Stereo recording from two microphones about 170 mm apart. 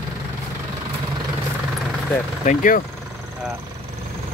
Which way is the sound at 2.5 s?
50° left (ahead or behind).